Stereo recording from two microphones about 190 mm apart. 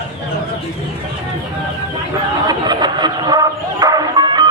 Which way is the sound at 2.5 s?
20° right (ahead or behind).